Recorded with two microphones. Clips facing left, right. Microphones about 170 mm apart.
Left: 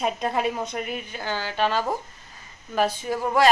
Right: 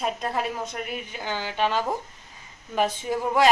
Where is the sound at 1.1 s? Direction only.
15° right (ahead or behind).